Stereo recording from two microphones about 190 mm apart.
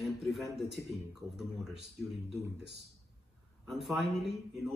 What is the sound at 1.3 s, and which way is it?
Speech, centre (ahead or behind).